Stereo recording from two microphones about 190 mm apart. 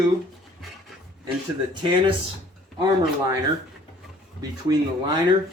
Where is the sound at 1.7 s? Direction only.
25° right (ahead or behind).